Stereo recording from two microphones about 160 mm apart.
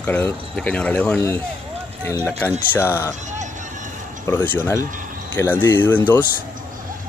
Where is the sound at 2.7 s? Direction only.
15° left (ahead or behind).